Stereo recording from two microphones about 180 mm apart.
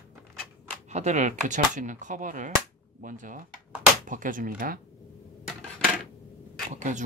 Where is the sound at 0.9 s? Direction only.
40° right (ahead or behind).